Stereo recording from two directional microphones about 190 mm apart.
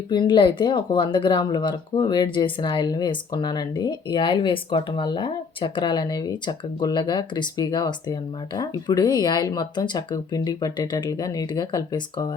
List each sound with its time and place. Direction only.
0.1 s speech: 25° left (ahead or behind)